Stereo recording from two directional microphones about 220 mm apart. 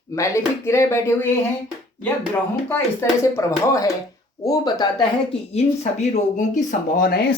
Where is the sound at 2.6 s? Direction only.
10° left (ahead or behind).